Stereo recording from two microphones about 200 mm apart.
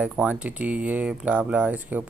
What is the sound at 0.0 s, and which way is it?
Speech, 5° right (ahead or behind).